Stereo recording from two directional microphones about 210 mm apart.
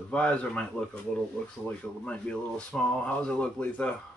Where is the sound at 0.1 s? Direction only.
5° left (ahead or behind).